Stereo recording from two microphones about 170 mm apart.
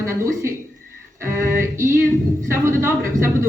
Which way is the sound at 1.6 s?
15° right (ahead or behind).